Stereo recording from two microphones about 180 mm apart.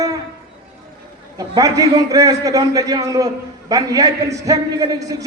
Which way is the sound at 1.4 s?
20° right (ahead or behind).